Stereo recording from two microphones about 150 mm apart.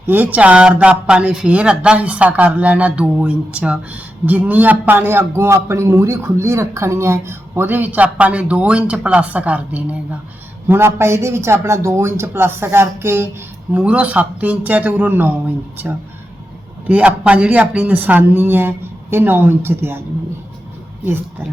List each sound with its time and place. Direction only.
0.1 s speech: 10° right (ahead or behind)
16.8 s speech: 10° right (ahead or behind)
21.0 s speech: 15° right (ahead or behind)